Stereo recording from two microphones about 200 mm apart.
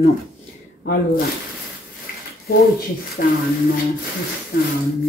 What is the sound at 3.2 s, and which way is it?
Speech, 45° left (ahead or behind).